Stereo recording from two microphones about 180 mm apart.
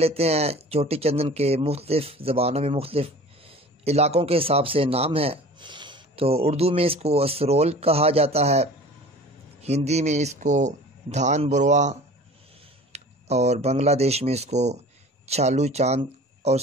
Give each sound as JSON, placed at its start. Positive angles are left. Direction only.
{"t": 0.0, "sound": "speech", "side_deg": -35}